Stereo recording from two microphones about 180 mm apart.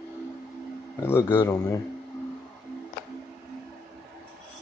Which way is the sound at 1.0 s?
15° left (ahead or behind).